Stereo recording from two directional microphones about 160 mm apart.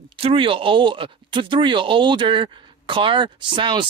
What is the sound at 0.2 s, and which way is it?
Speech, 35° right (ahead or behind).